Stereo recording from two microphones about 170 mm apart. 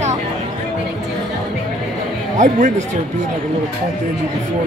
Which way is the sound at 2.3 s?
45° right (ahead or behind).